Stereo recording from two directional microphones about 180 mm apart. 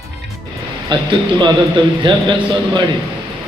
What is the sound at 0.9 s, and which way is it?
A man's voice, 25° right (ahead or behind).